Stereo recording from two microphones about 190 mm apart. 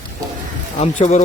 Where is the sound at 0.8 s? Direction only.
35° left (ahead or behind).